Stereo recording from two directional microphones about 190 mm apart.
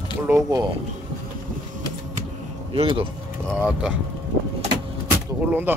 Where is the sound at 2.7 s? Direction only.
30° right (ahead or behind).